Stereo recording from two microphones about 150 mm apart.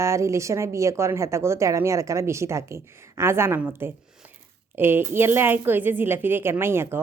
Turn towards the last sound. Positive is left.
turn(degrees=-15)  # may be behind; listen again after turning